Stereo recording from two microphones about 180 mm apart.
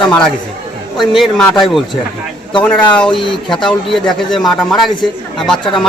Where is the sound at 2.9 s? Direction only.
5° left (ahead or behind).